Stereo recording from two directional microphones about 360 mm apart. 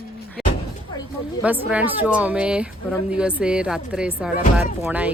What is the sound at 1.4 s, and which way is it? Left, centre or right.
Speech, centre.